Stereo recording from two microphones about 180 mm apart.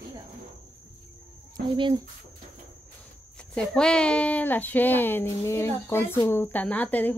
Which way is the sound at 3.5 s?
5° left (ahead or behind).